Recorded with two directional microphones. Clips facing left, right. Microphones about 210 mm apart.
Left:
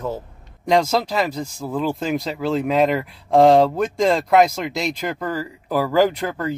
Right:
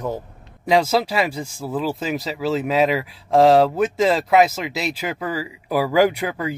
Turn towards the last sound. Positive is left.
turn(degrees=-10)  # may be behind; listen again after turning